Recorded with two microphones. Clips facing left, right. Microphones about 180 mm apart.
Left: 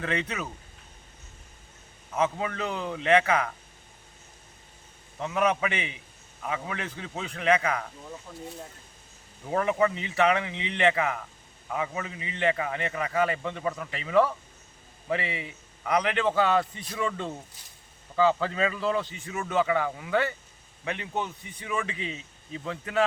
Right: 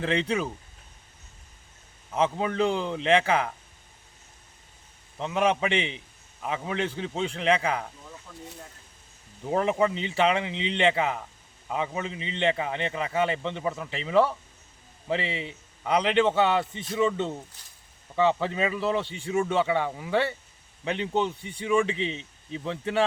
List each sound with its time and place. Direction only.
0.0 s a man's voice: 30° right (ahead or behind)
2.1 s a man's voice: 30° right (ahead or behind)
5.2 s a man's voice: 25° right (ahead or behind)
8.3 s speech: 15° left (ahead or behind)
9.5 s a man's voice: 25° right (ahead or behind)